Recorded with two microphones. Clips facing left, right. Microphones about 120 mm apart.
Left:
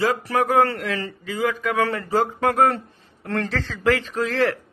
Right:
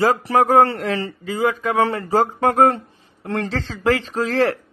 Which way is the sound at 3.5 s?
30° right (ahead or behind).